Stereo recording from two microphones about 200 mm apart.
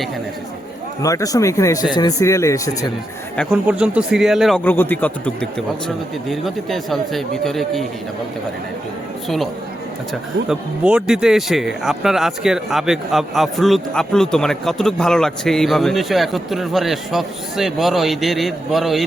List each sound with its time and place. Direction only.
1.0 s speech: 15° left (ahead or behind)
3.5 s speech: 5° right (ahead or behind)
10.5 s speech: 5° right (ahead or behind)